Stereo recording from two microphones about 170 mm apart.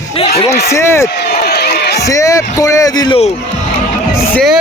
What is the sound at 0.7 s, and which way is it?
Speech, 15° left (ahead or behind).